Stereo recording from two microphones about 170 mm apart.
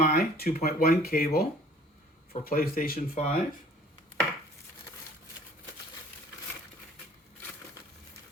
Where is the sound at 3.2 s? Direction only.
40° left (ahead or behind).